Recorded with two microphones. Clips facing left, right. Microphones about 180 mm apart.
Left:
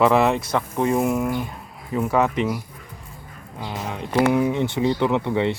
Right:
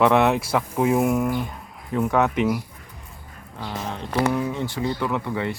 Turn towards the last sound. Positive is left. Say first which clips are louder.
# left 5 dB
turn(degrees=25)  # may be behind; listen again after turning